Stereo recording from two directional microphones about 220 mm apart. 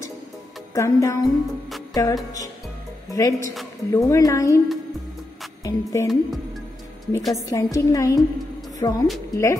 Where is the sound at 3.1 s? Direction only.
15° left (ahead or behind).